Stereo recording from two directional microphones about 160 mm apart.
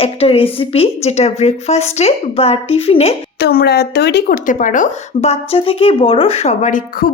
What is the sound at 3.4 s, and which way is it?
Speech, 80° left.